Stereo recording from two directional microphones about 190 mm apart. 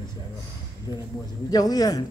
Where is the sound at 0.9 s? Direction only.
20° left (ahead or behind).